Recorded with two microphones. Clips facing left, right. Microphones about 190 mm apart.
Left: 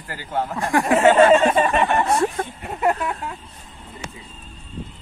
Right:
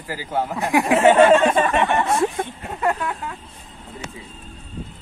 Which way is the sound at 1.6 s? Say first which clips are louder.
Even; 15° left (ahead or behind).